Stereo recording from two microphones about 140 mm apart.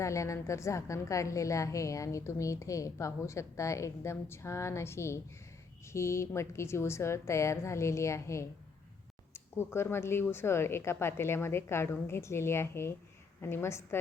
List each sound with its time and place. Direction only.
0.0 s a woman's voice: 20° left (ahead or behind)